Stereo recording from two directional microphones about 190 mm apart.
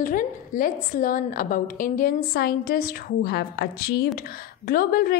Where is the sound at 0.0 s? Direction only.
45° left (ahead or behind).